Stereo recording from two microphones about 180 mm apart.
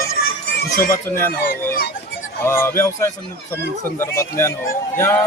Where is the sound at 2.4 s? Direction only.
15° left (ahead or behind).